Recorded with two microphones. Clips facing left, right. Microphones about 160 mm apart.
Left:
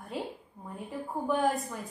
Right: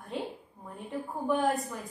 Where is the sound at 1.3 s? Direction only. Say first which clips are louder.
Right 1 dB; centre (ahead or behind).